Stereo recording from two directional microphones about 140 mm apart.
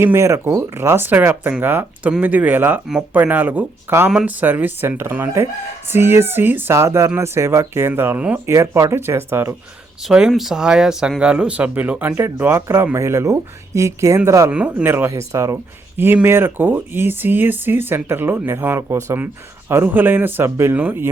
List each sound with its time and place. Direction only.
0.0 s speech: 20° right (ahead or behind)
10.0 s speech: 5° right (ahead or behind)
14.5 s speech: 10° right (ahead or behind)